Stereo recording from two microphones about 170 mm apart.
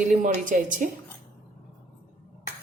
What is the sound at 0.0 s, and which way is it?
Speech, 45° right (ahead or behind).